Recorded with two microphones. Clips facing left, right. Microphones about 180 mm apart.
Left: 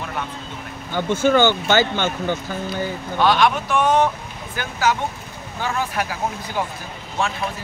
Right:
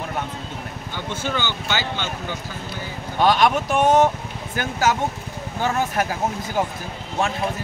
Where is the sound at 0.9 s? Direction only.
50° left (ahead or behind).